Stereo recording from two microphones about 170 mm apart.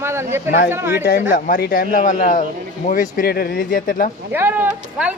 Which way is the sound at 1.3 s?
55° left (ahead or behind).